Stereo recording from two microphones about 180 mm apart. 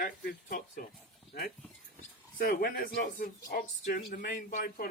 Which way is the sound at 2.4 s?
60° left (ahead or behind).